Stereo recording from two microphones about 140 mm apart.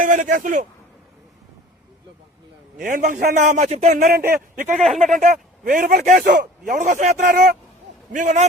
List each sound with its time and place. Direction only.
0.0 s speech: 70° right (ahead or behind)
2.7 s a man's voice: 70° right (ahead or behind); by 3.9 s 55° right (ahead or behind)
3.9 s a man's voice: 90° right
4.3 s speech: 70° right (ahead or behind)
4.8 s speech: centre (ahead or behind)
5.1 s speech: 65° right (ahead or behind); by 7.5 s 85° right
8.1 s a man's voice: 65° right (ahead or behind)